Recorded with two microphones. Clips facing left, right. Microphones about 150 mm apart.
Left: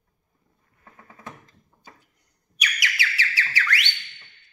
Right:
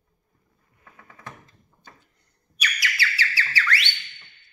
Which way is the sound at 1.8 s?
10° left (ahead or behind).